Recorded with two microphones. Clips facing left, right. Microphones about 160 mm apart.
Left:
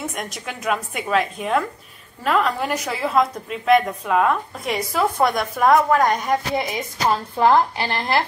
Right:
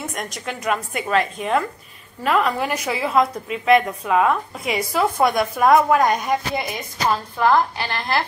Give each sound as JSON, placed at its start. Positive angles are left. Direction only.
{"t": 0.1, "sound": "a woman's voice", "side_deg": 5}
{"t": 7.3, "sound": "speech", "side_deg": 25}